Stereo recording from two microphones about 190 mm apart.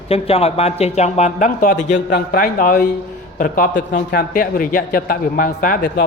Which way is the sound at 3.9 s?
50° left (ahead or behind).